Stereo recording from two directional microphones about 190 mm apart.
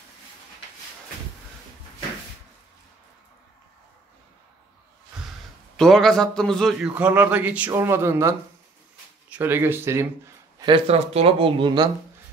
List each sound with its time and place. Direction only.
5.8 s a man's voice: centre (ahead or behind)
6.9 s speech: 10° right (ahead or behind)
10.6 s speech: 30° right (ahead or behind)